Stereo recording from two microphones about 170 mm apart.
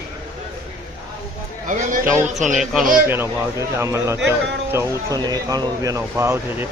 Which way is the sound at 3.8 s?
15° right (ahead or behind).